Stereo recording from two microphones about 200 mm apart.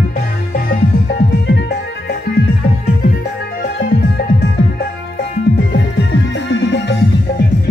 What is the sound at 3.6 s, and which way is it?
Music, 50° left (ahead or behind).